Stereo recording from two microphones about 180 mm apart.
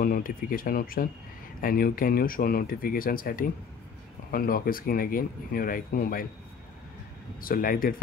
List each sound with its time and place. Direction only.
0.0 s speech: 50° left (ahead or behind)
7.3 s speech: 55° left (ahead or behind)